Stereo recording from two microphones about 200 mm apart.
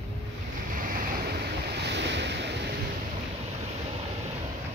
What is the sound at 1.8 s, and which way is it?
Waves, 60° right (ahead or behind).